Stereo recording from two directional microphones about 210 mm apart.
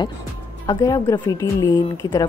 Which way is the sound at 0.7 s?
15° left (ahead or behind).